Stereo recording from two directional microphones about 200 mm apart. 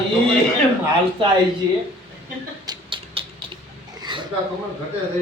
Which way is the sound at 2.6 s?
25° right (ahead or behind).